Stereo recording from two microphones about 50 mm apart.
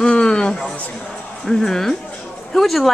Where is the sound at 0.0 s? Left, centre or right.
Centre.